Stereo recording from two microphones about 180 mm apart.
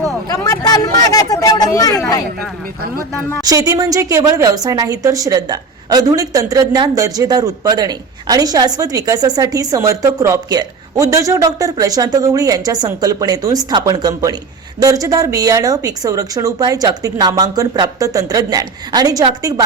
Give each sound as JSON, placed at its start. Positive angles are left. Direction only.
{"t": 0.3, "sound": "speech", "side_deg": 20}
{"t": 3.4, "sound": "a woman's voice", "side_deg": -20}